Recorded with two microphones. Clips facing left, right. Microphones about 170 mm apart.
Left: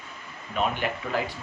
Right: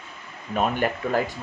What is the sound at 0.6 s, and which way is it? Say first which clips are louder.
Speech: right 4 dB; 45° right (ahead or behind).